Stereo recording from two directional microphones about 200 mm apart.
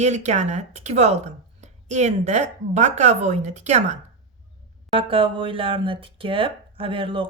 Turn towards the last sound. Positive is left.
turn(degrees=-25)  # may be behind; listen again after turning